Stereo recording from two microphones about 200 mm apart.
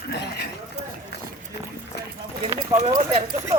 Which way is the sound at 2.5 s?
30° right (ahead or behind).